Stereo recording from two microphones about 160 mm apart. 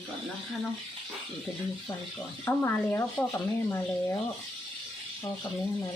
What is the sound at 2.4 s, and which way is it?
Speech, 15° left (ahead or behind).